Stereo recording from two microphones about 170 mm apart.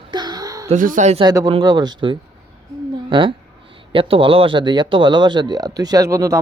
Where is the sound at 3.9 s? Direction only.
30° right (ahead or behind).